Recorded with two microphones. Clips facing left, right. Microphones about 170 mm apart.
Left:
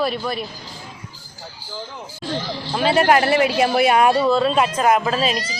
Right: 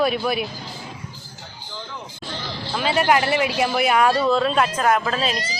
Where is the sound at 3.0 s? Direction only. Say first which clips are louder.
Left 2 dB; 45° left (ahead or behind).